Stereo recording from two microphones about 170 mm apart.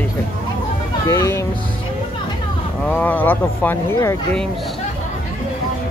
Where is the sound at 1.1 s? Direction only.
15° left (ahead or behind).